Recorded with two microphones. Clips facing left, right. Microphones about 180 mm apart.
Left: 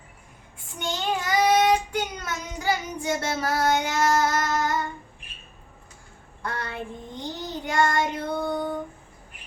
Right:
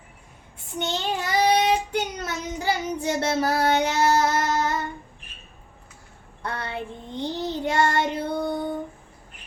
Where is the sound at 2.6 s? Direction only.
25° right (ahead or behind).